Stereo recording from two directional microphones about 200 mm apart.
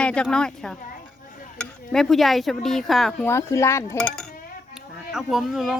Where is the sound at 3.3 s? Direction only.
15° left (ahead or behind).